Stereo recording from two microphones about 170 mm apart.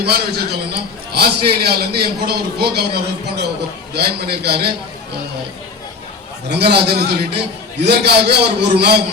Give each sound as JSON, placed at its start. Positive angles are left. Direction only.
{"t": 0.0, "sound": "a man's voice", "side_deg": -70}
{"t": 6.5, "sound": "a man's voice", "side_deg": -75}